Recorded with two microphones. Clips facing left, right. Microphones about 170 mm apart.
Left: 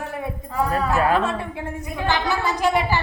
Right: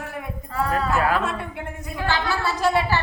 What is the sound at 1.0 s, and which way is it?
A woman's voice, 25° left (ahead or behind).